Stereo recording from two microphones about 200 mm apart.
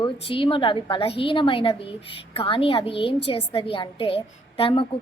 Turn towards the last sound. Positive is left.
turn(degrees=30)  # may be behind; listen again after turning